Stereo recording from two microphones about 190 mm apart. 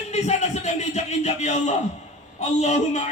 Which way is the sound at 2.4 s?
40° left (ahead or behind).